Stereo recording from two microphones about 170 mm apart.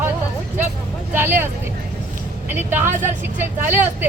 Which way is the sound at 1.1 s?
10° right (ahead or behind).